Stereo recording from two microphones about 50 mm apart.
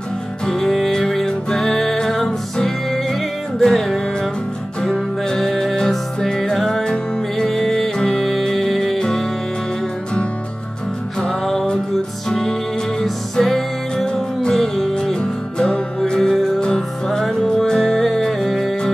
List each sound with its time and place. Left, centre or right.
0.5 s music: centre
5.3 s music: centre
7.4 s music: centre
11.1 s music: centre
15.1 s music: centre